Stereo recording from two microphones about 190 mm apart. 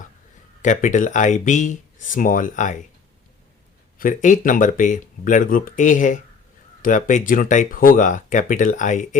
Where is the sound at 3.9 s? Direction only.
45° left (ahead or behind).